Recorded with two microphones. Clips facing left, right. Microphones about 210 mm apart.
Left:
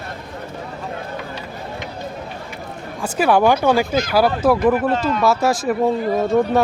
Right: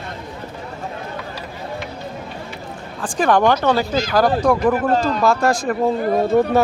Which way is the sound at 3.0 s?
10° left (ahead or behind).